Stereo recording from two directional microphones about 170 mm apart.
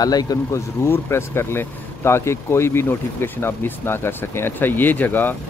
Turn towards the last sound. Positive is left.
turn(degrees=10)  # may be behind; listen again after turning